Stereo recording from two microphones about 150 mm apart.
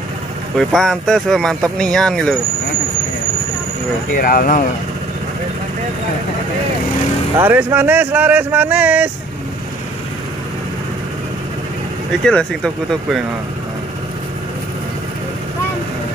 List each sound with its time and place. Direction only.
0.6 s speech: centre (ahead or behind)
4.2 s speech: 70° left (ahead or behind)
7.3 s speech: 15° right (ahead or behind)
12.3 s speech: 5° left (ahead or behind)